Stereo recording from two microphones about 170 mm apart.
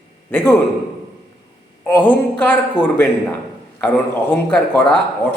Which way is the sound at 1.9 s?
10° left (ahead or behind).